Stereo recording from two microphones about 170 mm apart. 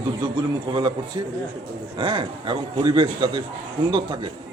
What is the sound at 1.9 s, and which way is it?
A man's voice, 25° right (ahead or behind).